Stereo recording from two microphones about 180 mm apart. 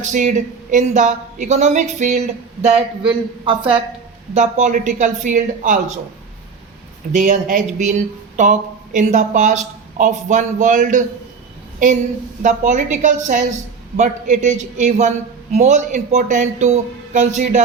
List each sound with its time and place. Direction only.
0.0 s a woman's voice: 45° right (ahead or behind); by 3.8 s 25° right (ahead or behind)
4.4 s speech: 40° right (ahead or behind)
7.1 s speech: 45° right (ahead or behind)